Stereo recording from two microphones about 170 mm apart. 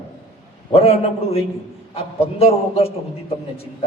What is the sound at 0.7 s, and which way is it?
Speech, 35° left (ahead or behind).